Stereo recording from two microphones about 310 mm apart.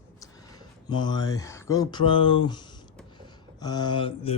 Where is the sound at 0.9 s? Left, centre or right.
Centre.